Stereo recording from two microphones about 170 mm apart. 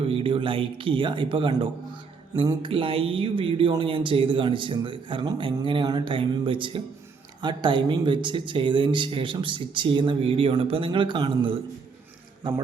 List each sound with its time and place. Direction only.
0.0 s a man's voice: 30° right (ahead or behind)